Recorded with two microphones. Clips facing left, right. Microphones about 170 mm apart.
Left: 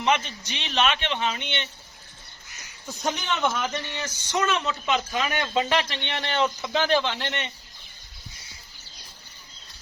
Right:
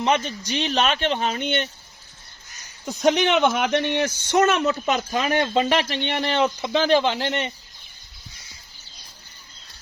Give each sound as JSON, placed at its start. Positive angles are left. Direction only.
{"t": 0.0, "sound": "speech", "side_deg": -35}
{"t": 3.0, "sound": "speech", "side_deg": -75}